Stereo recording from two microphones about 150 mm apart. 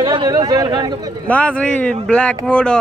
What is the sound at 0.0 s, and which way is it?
Speech, 25° right (ahead or behind).